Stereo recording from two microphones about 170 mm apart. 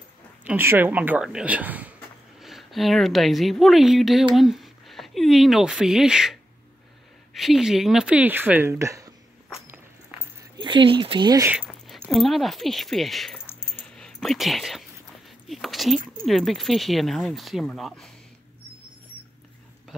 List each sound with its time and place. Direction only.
0.4 s speech: 10° right (ahead or behind)
7.3 s speech: centre (ahead or behind); by 9.1 s 20° right (ahead or behind)
10.6 s speech: 30° right (ahead or behind)
11.4 s speech: 10° right (ahead or behind)
11.9 s a sound: centre (ahead or behind)
16.3 s speech: centre (ahead or behind)